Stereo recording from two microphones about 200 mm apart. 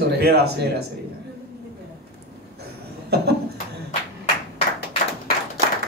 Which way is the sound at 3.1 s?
55° right (ahead or behind).